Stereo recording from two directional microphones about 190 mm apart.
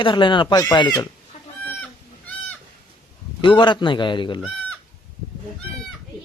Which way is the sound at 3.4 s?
25° left (ahead or behind).